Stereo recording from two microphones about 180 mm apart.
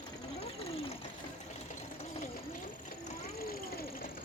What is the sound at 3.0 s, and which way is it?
Vehicle, 55° left (ahead or behind).